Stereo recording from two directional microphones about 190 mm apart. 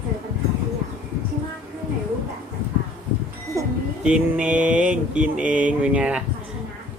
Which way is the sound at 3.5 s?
15° right (ahead or behind).